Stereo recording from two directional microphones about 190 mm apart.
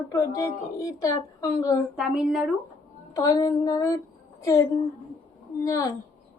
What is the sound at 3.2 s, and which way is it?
Speech, 15° left (ahead or behind).